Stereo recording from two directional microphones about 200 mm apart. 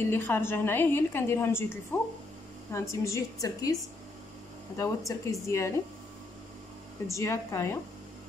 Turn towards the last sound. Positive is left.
turn(degrees=15)  # may be behind; listen again after turning